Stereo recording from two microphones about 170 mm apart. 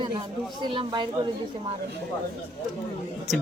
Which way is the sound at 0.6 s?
25° right (ahead or behind).